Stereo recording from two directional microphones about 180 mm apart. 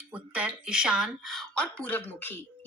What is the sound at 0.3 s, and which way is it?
Speech, 5° right (ahead or behind).